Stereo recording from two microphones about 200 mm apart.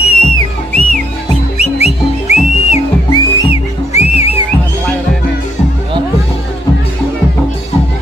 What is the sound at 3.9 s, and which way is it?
Music, 30° left (ahead or behind).